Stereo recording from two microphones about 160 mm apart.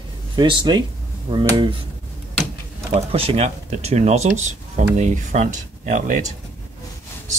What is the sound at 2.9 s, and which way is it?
Speech, 35° right (ahead or behind).